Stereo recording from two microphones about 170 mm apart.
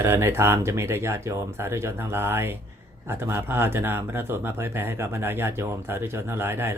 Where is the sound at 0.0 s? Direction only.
15° right (ahead or behind).